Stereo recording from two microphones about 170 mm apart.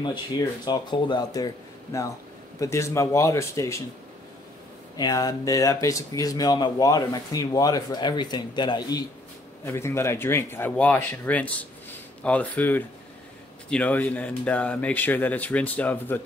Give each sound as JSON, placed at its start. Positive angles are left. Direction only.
{"t": 0.7, "sound": "speech", "side_deg": 25}
{"t": 4.9, "sound": "speech", "side_deg": 25}
{"t": 9.7, "sound": "speech", "side_deg": 15}